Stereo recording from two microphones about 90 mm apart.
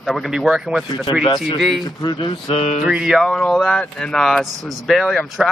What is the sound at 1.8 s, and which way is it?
Speech, 60° left (ahead or behind).